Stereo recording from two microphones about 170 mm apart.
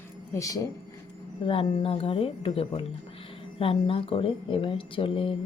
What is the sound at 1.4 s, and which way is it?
Speech, 30° left (ahead or behind).